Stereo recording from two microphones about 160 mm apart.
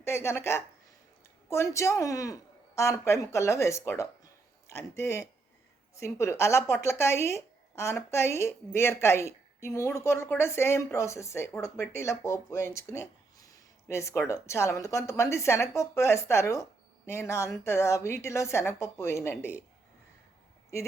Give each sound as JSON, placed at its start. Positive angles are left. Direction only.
{"t": 0.0, "sound": "a woman's voice", "side_deg": 15}